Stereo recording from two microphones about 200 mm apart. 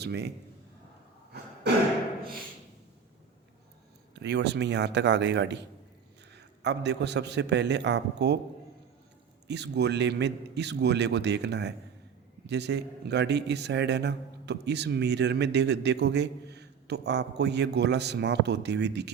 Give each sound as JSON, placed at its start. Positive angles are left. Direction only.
{"t": 0.0, "sound": "a man's voice", "side_deg": -55}
{"t": 4.1, "sound": "a man's voice", "side_deg": -60}
{"t": 9.5, "sound": "a man's voice", "side_deg": -60}